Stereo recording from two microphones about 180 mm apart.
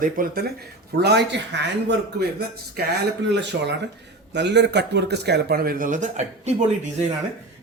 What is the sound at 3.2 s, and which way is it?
A man's voice, 75° right (ahead or behind).